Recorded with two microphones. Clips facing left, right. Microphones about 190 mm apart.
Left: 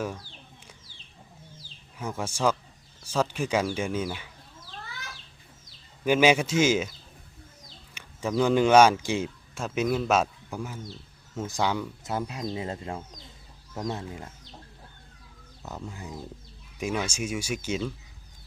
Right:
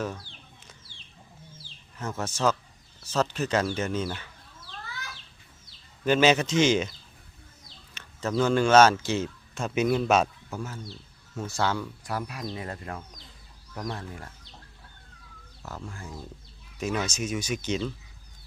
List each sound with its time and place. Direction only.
2.0 s speech: 10° left (ahead or behind)
6.1 s speech: 10° left (ahead or behind)
7.9 s speech: 10° left (ahead or behind)
10.5 s speech: 15° left (ahead or behind)
15.6 s speech: 20° left (ahead or behind)